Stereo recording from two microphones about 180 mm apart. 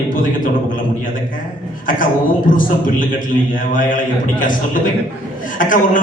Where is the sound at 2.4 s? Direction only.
50° left (ahead or behind).